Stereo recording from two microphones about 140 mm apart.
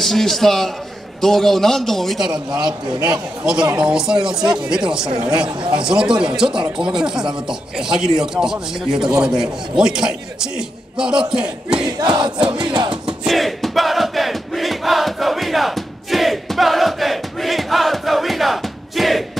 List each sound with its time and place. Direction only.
0.0 s a man's voice: centre (ahead or behind)
2.6 s music: 30° right (ahead or behind)
3.7 s a man's voice: 5° right (ahead or behind)
11.8 s music: 30° right (ahead or behind)
13.3 s crowd: centre (ahead or behind)